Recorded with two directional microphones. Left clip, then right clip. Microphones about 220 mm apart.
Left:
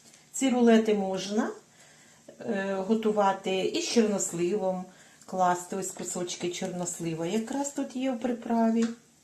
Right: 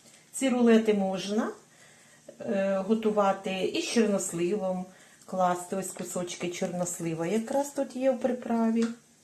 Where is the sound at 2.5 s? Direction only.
20° right (ahead or behind).